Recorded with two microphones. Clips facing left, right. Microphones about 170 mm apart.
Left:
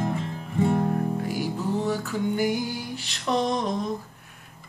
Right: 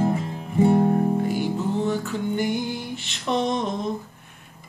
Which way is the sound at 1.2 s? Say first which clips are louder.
Right 3 dB; 5° left (ahead or behind).